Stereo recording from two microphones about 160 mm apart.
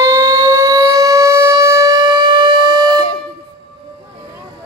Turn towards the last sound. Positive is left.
turn(degrees=-30)  # may be behind; listen again after turning